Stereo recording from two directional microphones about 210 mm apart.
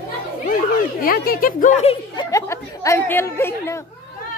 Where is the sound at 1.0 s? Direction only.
45° left (ahead or behind).